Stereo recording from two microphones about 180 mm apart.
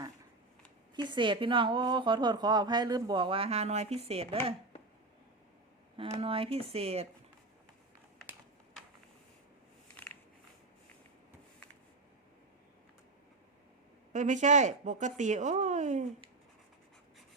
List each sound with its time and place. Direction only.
0.9 s a woman's voice: 25° right (ahead or behind)
6.1 s speech: 30° right (ahead or behind)
14.1 s speech: 45° right (ahead or behind)